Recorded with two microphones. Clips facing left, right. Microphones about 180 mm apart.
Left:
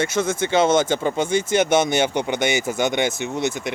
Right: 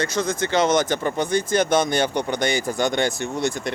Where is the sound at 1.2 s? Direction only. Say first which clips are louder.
Even; 25° left (ahead or behind).